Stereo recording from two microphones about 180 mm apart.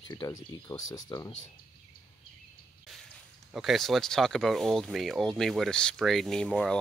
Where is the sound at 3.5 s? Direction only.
Centre (ahead or behind).